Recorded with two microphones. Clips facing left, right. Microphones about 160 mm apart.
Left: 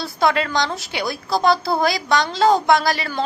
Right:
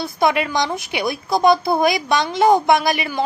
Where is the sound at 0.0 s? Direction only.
20° right (ahead or behind).